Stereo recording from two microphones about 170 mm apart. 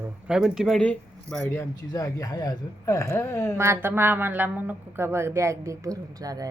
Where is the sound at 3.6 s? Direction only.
15° right (ahead or behind).